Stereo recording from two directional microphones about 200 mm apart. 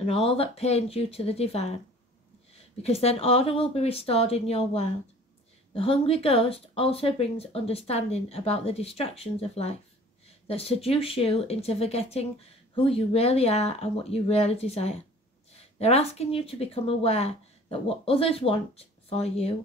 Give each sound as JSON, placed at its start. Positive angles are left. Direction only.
{"t": 0.0, "sound": "speech", "side_deg": 30}